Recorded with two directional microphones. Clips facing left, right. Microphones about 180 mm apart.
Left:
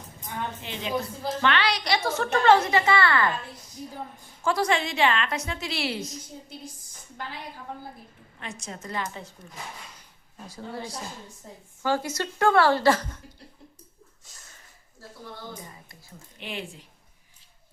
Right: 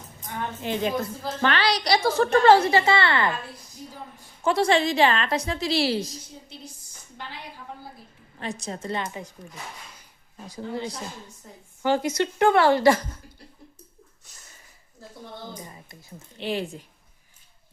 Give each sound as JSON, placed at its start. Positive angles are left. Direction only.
{"t": 0.6, "sound": "a woman's voice", "side_deg": -45}
{"t": 4.4, "sound": "a woman's voice", "side_deg": -25}
{"t": 8.4, "sound": "a woman's voice", "side_deg": -35}
{"t": 9.4, "sound": "a woman's voice", "side_deg": -10}
{"t": 16.4, "sound": "a woman's voice", "side_deg": -35}